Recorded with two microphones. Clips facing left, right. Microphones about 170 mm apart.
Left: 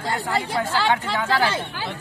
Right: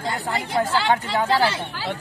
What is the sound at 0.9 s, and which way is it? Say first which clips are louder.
Speech: right 2 dB; 35° right (ahead or behind).